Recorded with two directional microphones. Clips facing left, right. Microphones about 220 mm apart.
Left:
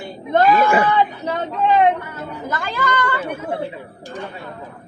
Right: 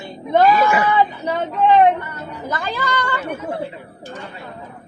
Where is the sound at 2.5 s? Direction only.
15° right (ahead or behind).